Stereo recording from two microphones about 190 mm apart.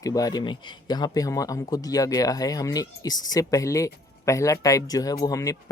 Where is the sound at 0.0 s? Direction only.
20° left (ahead or behind).